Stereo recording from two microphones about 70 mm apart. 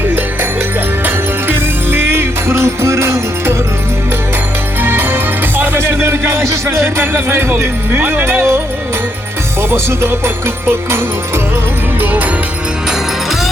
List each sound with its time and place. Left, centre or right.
1.0 s music: right
4.8 s music: right
11.9 s music: right